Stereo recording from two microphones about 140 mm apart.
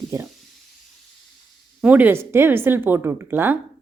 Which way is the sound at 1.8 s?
10° right (ahead or behind).